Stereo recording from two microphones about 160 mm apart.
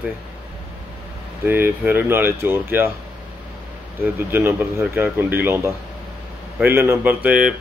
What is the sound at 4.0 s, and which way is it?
Speech, 15° right (ahead or behind).